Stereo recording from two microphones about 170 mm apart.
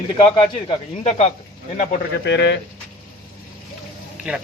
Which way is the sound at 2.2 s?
90° left.